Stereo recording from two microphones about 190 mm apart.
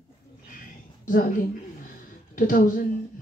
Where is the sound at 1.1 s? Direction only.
50° left (ahead or behind).